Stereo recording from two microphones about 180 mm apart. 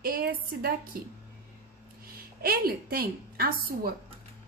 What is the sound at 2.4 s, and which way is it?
A woman's voice, 55° right (ahead or behind).